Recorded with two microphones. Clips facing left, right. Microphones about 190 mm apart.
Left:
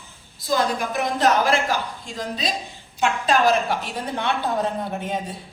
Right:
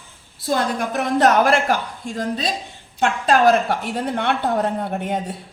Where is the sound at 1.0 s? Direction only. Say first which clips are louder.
Right 4 dB; 60° right (ahead or behind).